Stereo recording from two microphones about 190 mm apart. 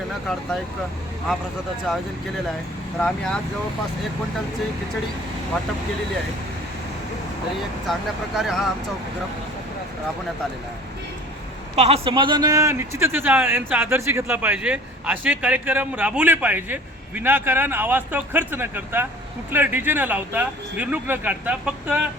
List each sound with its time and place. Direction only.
3.0 s speech: 5° left (ahead or behind)
7.9 s speech: centre (ahead or behind)
11.8 s speech: 30° right (ahead or behind); by 22.0 s 5° right (ahead or behind)